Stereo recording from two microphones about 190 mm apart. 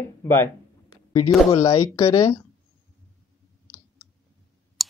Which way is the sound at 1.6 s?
20° left (ahead or behind).